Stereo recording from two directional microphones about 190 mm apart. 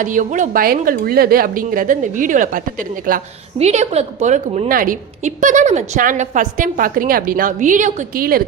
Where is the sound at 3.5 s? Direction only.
35° right (ahead or behind).